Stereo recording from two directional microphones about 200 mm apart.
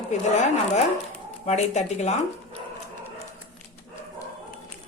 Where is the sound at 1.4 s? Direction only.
35° left (ahead or behind).